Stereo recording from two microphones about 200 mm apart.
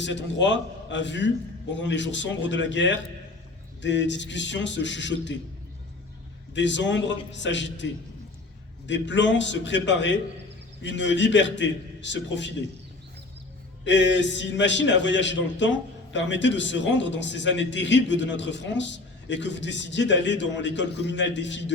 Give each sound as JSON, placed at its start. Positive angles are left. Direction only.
{"t": 0.0, "sound": "a man's voice", "side_deg": 65}
{"t": 6.5, "sound": "a man's voice", "side_deg": 65}
{"t": 8.9, "sound": "a man's voice", "side_deg": 65}
{"t": 13.8, "sound": "a man's voice", "side_deg": 65}